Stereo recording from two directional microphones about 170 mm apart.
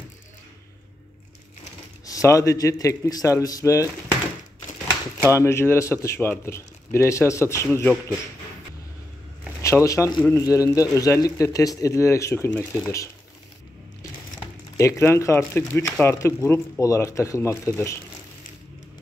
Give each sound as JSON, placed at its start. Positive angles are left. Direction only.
{"t": 2.0, "sound": "a man's voice", "side_deg": 20}
{"t": 5.3, "sound": "a man's voice", "side_deg": 15}
{"t": 9.6, "sound": "a man's voice", "side_deg": 15}
{"t": 14.8, "sound": "a man's voice", "side_deg": 15}